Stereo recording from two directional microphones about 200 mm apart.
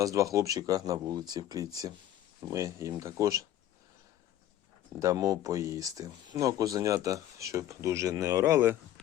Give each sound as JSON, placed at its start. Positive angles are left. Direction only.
{"t": 0.0, "sound": "speech", "side_deg": -15}
{"t": 4.9, "sound": "speech", "side_deg": -15}